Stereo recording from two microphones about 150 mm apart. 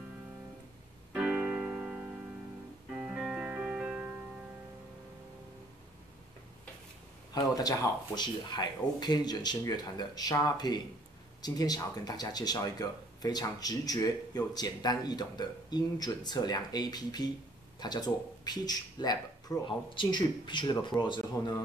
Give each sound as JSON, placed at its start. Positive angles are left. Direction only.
{"t": 1.1, "sound": "music", "side_deg": -10}
{"t": 7.3, "sound": "speech", "side_deg": 25}